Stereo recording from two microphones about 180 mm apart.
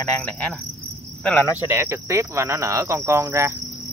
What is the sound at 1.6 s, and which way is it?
Cricket, 15° right (ahead or behind).